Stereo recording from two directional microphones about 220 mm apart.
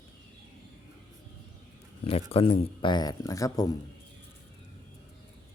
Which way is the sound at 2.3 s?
25° left (ahead or behind).